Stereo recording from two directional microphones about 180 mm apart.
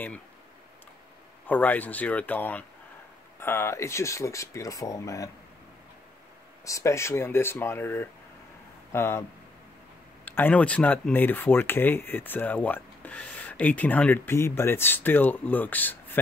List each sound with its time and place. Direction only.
1.5 s speech: 10° left (ahead or behind)
6.6 s speech: 15° left (ahead or behind)
10.2 s speech: 10° left (ahead or behind)